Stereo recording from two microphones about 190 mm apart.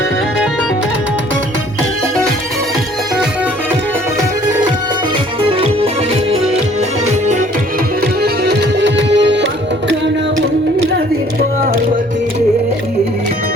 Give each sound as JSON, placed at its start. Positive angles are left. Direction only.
{"t": 5.4, "sound": "music", "side_deg": -30}
{"t": 8.2, "sound": "music", "side_deg": -65}